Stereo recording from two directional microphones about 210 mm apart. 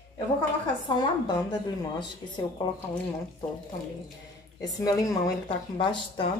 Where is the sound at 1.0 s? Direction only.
20° left (ahead or behind).